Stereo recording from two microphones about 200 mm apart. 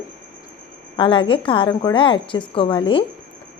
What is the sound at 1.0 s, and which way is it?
Speech, 25° left (ahead or behind).